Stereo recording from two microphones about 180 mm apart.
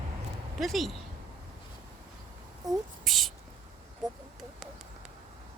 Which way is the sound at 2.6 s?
20° right (ahead or behind).